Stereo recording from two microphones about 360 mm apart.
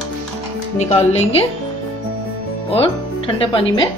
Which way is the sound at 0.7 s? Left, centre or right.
Centre.